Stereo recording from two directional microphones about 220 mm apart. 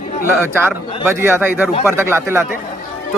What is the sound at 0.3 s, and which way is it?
A man's voice, 10° right (ahead or behind).